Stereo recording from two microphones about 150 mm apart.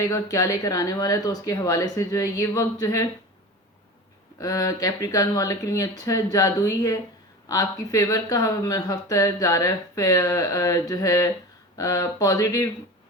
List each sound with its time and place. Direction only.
0.0 s speech: 20° left (ahead or behind)
4.4 s speech: 25° left (ahead or behind)